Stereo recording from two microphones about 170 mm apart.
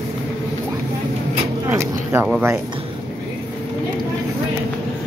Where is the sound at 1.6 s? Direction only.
15° right (ahead or behind).